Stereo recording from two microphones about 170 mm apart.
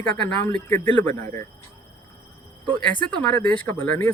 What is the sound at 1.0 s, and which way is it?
Speech, 45° right (ahead or behind).